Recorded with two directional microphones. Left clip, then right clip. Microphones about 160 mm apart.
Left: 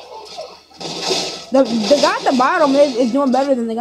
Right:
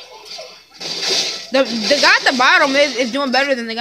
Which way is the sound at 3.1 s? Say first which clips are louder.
Left 2 dB; 30° right (ahead or behind).